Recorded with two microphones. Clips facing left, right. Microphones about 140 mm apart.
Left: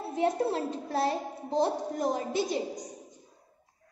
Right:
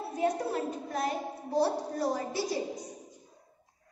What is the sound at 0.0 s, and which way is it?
A child's voice, 25° left (ahead or behind).